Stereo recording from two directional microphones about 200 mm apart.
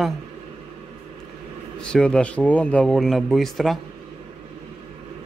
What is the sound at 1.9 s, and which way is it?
Speech, 5° left (ahead or behind).